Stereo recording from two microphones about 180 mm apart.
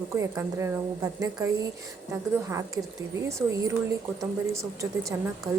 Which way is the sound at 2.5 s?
15° right (ahead or behind).